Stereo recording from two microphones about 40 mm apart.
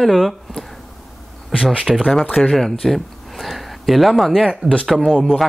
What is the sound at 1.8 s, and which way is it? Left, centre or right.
Speech, centre.